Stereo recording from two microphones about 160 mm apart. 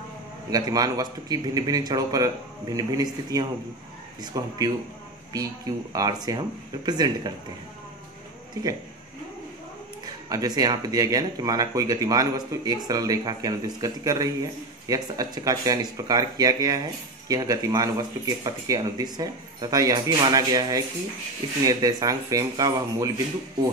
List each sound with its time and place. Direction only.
0.5 s speech: 25° right (ahead or behind)
5.9 s speech: 25° right (ahead or behind)
8.6 s speech: 20° right (ahead or behind)
10.3 s speech: 25° right (ahead or behind)